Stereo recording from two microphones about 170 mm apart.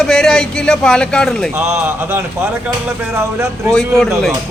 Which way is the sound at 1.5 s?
15° right (ahead or behind).